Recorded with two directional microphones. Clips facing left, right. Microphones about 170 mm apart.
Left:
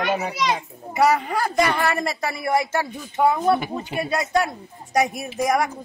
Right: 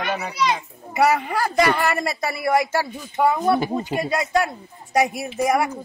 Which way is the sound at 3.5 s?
35° right (ahead or behind).